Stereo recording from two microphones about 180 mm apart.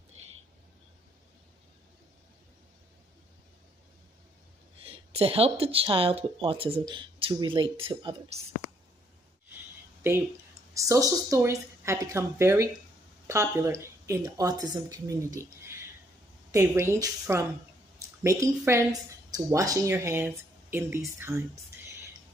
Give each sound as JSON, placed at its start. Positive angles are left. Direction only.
{"t": 4.8, "sound": "speech", "side_deg": -30}
{"t": 10.0, "sound": "speech", "side_deg": -15}